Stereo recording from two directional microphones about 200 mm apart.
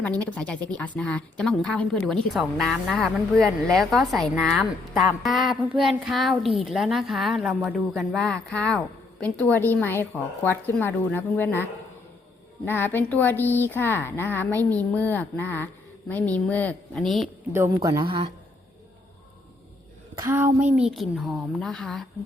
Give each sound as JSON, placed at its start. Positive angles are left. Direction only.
{"t": 0.3, "sound": "a woman's voice", "side_deg": 5}
{"t": 17.7, "sound": "a woman's voice", "side_deg": -20}
{"t": 20.1, "sound": "a woman's voice", "side_deg": -10}